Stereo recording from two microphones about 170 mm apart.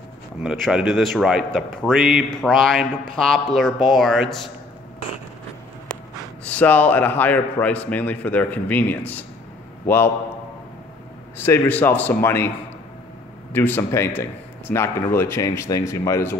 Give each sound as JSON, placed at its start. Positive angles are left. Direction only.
{"t": 0.4, "sound": "a man's voice", "side_deg": -5}
{"t": 6.4, "sound": "a man's voice", "side_deg": 10}
{"t": 11.3, "sound": "a man's voice", "side_deg": 15}
{"t": 13.5, "sound": "a man's voice", "side_deg": 10}